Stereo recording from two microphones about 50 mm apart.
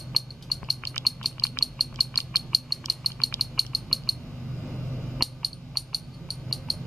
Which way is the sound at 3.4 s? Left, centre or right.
Centre.